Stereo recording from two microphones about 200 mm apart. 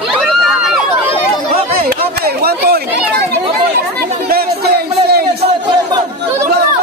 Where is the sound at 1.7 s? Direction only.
50° right (ahead or behind).